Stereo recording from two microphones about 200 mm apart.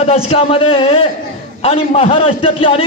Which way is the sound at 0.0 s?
30° left (ahead or behind).